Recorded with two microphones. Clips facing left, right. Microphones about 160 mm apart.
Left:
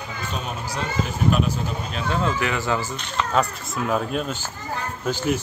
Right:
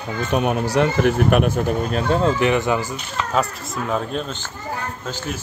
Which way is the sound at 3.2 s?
Centre (ahead or behind).